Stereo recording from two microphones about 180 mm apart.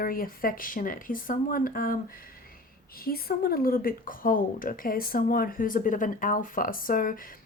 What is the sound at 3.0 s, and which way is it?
A woman's voice, 55° left (ahead or behind).